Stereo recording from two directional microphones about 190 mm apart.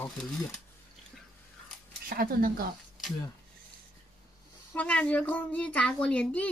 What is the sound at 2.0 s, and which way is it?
Speech, 50° right (ahead or behind).